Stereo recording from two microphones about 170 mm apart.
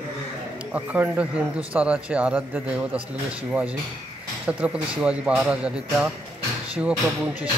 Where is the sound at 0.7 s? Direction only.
10° right (ahead or behind).